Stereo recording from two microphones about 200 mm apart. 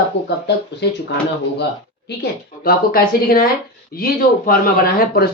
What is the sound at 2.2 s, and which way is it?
Speech, 50° left (ahead or behind).